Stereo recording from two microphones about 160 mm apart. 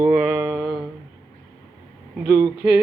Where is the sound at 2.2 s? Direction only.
20° right (ahead or behind).